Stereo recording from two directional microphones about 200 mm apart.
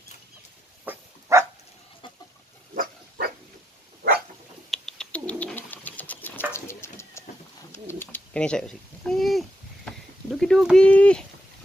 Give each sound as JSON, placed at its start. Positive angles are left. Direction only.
{"t": 1.3, "sound": "dog", "side_deg": -15}
{"t": 2.7, "sound": "pig", "side_deg": -45}
{"t": 4.6, "sound": "bird", "side_deg": 5}
{"t": 6.5, "sound": "a sound", "side_deg": 15}